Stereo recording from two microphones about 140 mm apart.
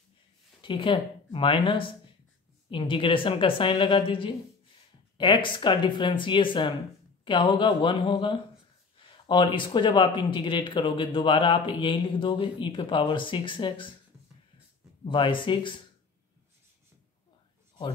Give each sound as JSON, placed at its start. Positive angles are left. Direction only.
{"t": 0.6, "sound": "speech", "side_deg": 35}
{"t": 15.0, "sound": "speech", "side_deg": 35}